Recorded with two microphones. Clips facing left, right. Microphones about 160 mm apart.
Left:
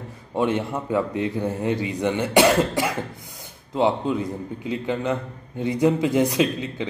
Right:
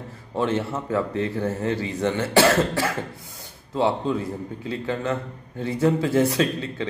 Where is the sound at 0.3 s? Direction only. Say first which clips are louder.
Left 1 dB; 15° left (ahead or behind).